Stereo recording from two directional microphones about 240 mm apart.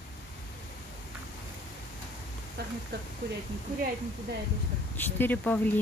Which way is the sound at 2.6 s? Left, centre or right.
Right.